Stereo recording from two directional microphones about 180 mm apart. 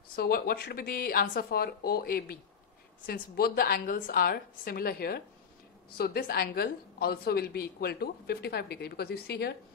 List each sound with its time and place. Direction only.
0.1 s a woman's voice: 55° left (ahead or behind)